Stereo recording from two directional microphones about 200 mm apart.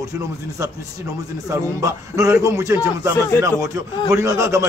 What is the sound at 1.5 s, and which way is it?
A man's voice, 15° right (ahead or behind).